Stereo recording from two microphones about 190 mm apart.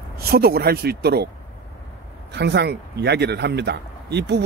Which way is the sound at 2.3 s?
60° right (ahead or behind).